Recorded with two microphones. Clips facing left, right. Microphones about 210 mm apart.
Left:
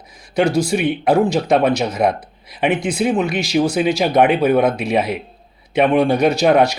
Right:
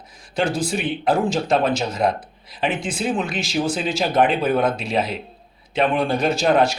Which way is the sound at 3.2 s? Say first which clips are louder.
Left 6 dB; 65° left (ahead or behind).